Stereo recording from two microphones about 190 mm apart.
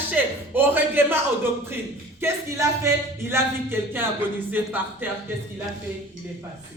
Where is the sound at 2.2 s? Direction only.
15° right (ahead or behind).